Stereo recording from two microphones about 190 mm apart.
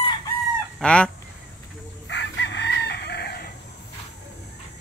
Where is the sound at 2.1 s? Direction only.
65° left (ahead or behind).